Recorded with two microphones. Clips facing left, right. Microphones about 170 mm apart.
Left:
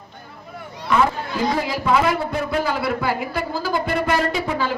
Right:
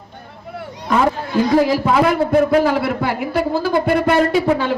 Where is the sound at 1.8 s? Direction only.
50° right (ahead or behind).